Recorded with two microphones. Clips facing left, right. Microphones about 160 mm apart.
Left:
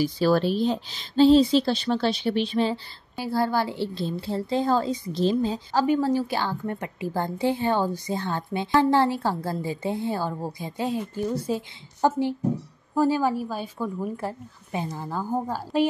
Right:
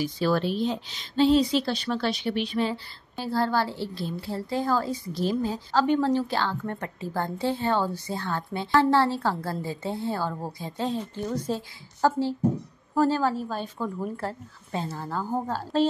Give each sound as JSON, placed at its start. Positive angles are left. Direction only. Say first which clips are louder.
{"t": 0.0, "sound": "speech", "louder": "left 4 dB", "side_deg": 35}
{"t": 3.2, "sound": "a woman's voice", "louder": "left 1 dB", "side_deg": 10}